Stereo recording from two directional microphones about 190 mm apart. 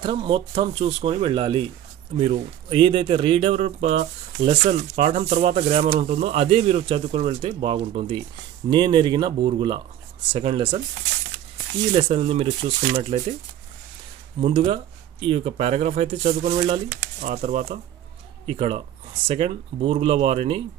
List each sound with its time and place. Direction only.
0.0 s speech: 25° right (ahead or behind)
11.9 s speech: 30° right (ahead or behind)
14.4 s speech: 30° right (ahead or behind)